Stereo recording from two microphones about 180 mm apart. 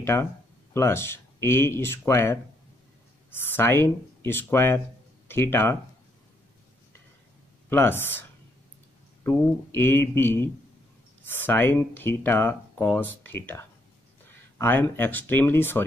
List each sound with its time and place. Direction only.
0.0 s speech: 15° left (ahead or behind)
7.7 s speech: 10° left (ahead or behind)